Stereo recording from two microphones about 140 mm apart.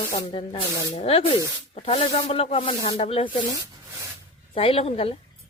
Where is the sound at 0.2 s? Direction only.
35° left (ahead or behind).